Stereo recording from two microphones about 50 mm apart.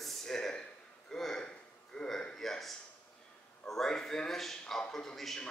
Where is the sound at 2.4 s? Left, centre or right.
Centre.